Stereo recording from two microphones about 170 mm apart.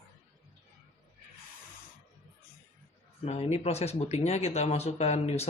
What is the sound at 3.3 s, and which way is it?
Speech, 40° left (ahead or behind).